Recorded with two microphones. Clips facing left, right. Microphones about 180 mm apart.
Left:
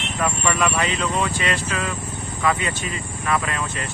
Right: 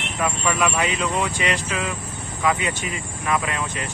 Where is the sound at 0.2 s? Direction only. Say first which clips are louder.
Even; 5° right (ahead or behind).